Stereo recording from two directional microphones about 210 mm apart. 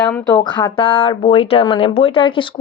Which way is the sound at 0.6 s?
25° left (ahead or behind).